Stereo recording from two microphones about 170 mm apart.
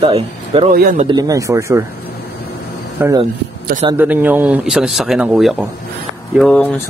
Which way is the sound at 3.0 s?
15° right (ahead or behind).